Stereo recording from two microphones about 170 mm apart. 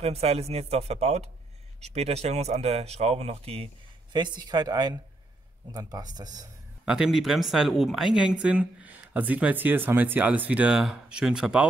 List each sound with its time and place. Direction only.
0.0 s speech: 35° right (ahead or behind); by 6.5 s 20° right (ahead or behind)
6.9 s speech: 5° right (ahead or behind)